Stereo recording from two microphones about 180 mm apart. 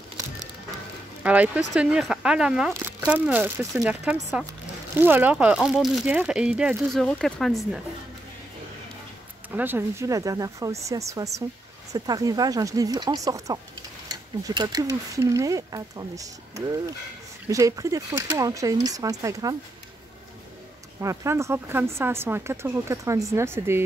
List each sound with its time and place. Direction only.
1.2 s speech: 5° right (ahead or behind)
9.5 s speech: 10° right (ahead or behind)
21.0 s speech: 15° right (ahead or behind)